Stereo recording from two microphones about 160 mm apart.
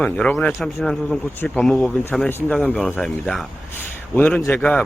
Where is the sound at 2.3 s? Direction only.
15° left (ahead or behind).